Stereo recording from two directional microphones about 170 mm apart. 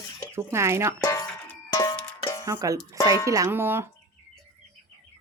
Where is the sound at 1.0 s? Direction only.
20° left (ahead or behind).